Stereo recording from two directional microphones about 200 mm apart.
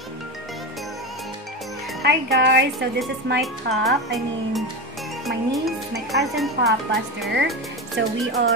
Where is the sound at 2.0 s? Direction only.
60° right (ahead or behind).